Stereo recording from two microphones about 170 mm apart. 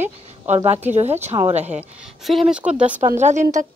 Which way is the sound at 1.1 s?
15° right (ahead or behind).